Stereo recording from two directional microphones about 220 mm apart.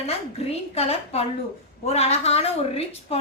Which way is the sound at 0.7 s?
25° left (ahead or behind).